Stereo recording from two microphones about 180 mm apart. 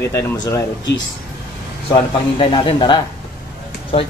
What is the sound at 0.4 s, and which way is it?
Speech, 15° left (ahead or behind).